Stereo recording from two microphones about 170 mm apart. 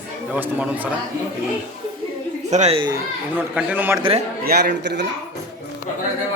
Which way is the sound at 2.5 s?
45° right (ahead or behind).